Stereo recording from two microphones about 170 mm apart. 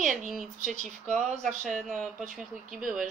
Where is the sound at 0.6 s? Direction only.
45° right (ahead or behind).